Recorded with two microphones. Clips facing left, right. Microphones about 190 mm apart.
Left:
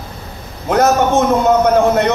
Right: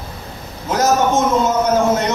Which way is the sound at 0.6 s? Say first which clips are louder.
Left 3 dB; 60° left (ahead or behind).